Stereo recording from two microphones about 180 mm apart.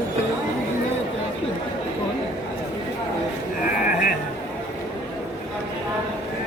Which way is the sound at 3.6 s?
50° left (ahead or behind).